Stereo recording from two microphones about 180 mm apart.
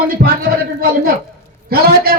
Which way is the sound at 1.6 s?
60° right (ahead or behind).